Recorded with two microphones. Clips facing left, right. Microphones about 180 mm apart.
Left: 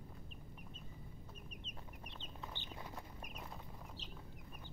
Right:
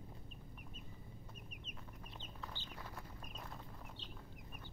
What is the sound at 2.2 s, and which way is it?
Chicken, 20° left (ahead or behind).